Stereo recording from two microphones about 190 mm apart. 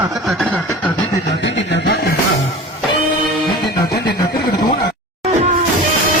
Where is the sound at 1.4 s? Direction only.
65° left (ahead or behind).